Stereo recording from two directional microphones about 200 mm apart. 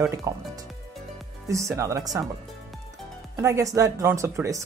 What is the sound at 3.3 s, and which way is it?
Speech, 15° right (ahead or behind).